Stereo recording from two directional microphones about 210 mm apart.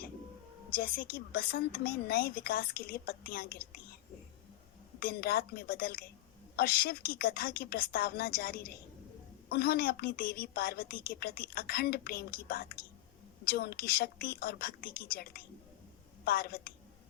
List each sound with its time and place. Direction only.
0.8 s a woman's voice: 45° left (ahead or behind)
4.9 s a woman's voice: 45° left (ahead or behind)